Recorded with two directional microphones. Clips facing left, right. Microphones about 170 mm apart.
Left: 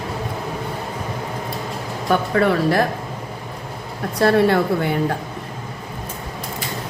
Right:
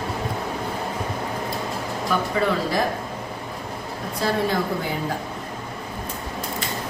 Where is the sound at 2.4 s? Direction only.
60° left (ahead or behind).